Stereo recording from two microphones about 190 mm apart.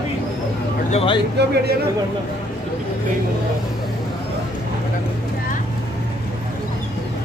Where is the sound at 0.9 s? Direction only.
25° left (ahead or behind).